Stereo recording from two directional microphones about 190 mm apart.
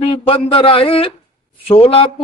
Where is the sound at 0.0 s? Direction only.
30° left (ahead or behind).